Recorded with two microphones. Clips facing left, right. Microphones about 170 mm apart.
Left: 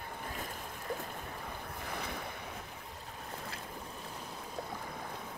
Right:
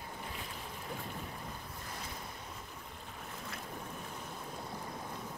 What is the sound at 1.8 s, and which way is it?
Waves, 65° left (ahead or behind).